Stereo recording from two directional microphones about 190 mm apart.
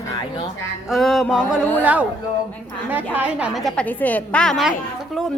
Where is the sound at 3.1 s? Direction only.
5° right (ahead or behind).